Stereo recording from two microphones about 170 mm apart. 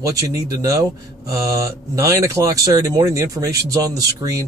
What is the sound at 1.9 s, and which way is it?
Speech, 20° right (ahead or behind).